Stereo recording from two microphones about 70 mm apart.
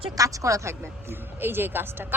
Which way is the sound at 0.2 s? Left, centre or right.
Right.